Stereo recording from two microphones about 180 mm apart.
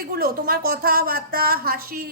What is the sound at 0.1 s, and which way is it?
A woman's voice, 55° right (ahead or behind).